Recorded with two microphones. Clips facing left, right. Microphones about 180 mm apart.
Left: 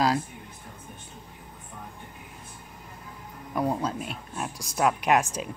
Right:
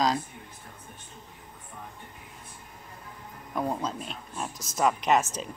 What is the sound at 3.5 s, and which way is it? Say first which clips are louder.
A woman's voice: left 3 dB; 10° left (ahead or behind).